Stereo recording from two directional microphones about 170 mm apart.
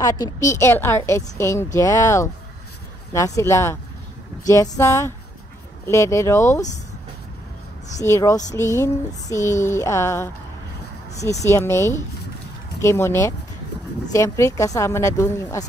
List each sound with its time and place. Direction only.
0.0 s a woman's voice: 20° left (ahead or behind)
8.0 s a woman's voice: 20° left (ahead or behind)
11.4 s a woman's voice: 15° left (ahead or behind)